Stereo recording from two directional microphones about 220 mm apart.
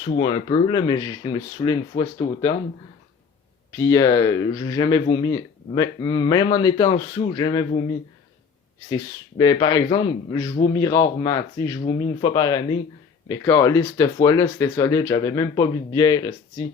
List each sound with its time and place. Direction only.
0.0 s speech: 20° left (ahead or behind)
3.7 s speech: 15° left (ahead or behind)
9.4 s speech: 20° left (ahead or behind)